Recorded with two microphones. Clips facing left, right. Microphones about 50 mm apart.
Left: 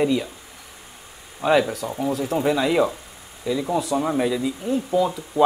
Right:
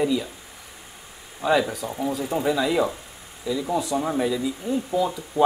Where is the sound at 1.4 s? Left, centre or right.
Centre.